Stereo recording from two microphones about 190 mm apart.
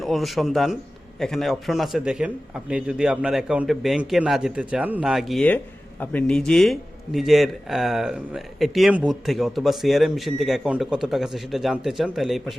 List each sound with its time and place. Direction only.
0.0 s a man's voice: centre (ahead or behind)